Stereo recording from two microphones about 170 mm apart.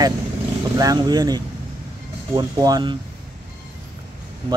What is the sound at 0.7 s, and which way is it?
Speech, 20° right (ahead or behind).